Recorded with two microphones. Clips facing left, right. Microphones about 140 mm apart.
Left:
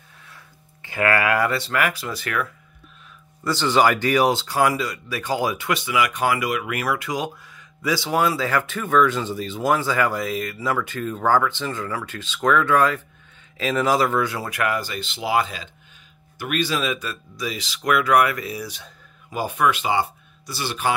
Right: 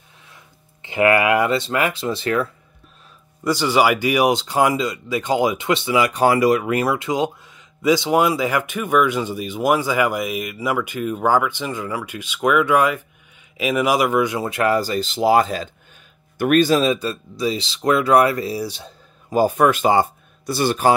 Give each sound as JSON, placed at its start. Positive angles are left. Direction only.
{"t": 0.8, "sound": "speech", "side_deg": -20}
{"t": 3.4, "sound": "speech", "side_deg": -10}